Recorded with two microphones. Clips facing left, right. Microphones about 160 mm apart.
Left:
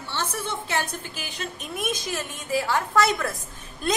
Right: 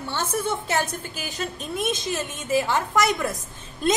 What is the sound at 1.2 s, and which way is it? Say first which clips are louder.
Speech: right 4 dB; 40° right (ahead or behind).